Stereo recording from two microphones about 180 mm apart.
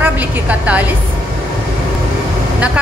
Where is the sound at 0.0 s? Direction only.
10° right (ahead or behind).